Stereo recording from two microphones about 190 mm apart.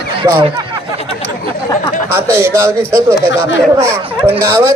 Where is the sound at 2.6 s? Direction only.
15° right (ahead or behind).